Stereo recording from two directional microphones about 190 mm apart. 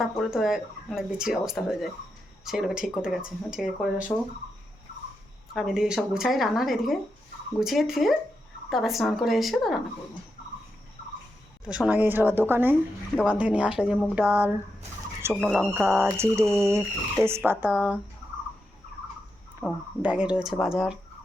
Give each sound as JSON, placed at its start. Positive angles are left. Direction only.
{"t": 0.0, "sound": "speech", "side_deg": 0}
{"t": 5.5, "sound": "speech", "side_deg": 0}
{"t": 11.6, "sound": "speech", "side_deg": -5}
{"t": 15.3, "sound": "speech", "side_deg": 0}
{"t": 15.7, "sound": "speech", "side_deg": -10}
{"t": 19.6, "sound": "speech", "side_deg": 0}